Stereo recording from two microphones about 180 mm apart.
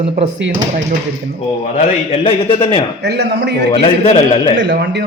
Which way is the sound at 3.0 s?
70° right (ahead or behind).